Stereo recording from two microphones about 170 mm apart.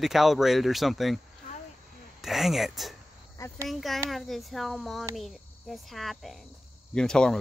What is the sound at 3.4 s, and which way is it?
Speech, 20° left (ahead or behind).